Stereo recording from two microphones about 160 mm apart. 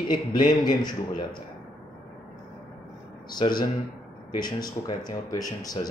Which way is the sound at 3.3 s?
30° left (ahead or behind).